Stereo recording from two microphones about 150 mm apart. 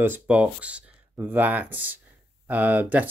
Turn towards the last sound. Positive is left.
turn(degrees=-10)  # may be behind; listen again after turning